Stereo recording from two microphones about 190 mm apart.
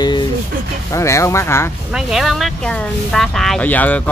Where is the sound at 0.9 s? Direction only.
15° left (ahead or behind).